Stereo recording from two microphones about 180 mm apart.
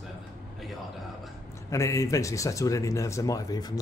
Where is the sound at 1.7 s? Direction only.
15° left (ahead or behind).